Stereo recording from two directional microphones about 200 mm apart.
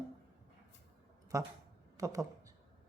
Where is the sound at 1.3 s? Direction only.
15° right (ahead or behind).